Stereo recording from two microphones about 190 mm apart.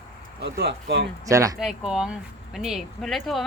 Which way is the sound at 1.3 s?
15° right (ahead or behind).